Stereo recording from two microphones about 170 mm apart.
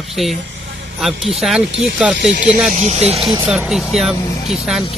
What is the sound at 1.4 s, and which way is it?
Speech, centre (ahead or behind).